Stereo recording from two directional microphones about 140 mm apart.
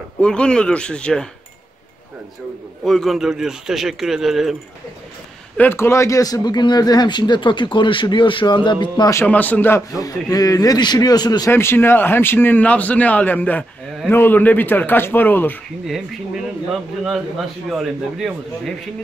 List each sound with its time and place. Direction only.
0.2 s a man's voice: 5° left (ahead or behind)
2.8 s speech: centre (ahead or behind)
5.6 s speech: 15° left (ahead or behind); by 9.1 s 35° left (ahead or behind)
9.1 s a man's voice: 10° left (ahead or behind); by 11.5 s 30° left (ahead or behind)
11.5 s a man's voice: 15° left (ahead or behind)
17.6 s speech: centre (ahead or behind)